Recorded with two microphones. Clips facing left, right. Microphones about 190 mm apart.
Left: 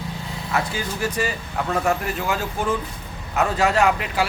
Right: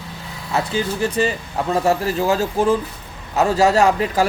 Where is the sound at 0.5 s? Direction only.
30° right (ahead or behind).